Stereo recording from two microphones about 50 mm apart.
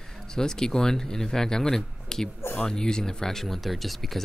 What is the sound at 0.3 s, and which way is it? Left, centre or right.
Speech, centre.